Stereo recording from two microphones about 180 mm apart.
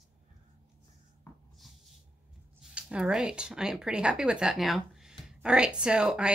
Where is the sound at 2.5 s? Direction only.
5° right (ahead or behind).